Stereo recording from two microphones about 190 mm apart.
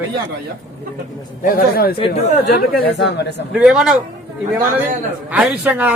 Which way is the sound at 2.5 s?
45° left (ahead or behind).